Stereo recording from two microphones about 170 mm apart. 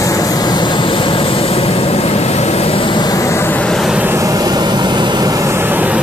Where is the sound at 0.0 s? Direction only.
20° left (ahead or behind); by 4.0 s centre (ahead or behind).